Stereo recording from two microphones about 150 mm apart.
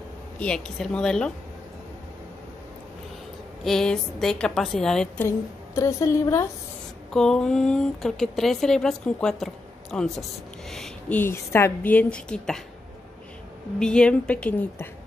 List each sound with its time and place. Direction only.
0.4 s speech: 5° left (ahead or behind)
3.6 s speech: 5° left (ahead or behind)
5.8 s a woman's voice: 20° left (ahead or behind)
7.1 s a woman's voice: 5° left (ahead or behind)
13.7 s a woman's voice: 5° left (ahead or behind)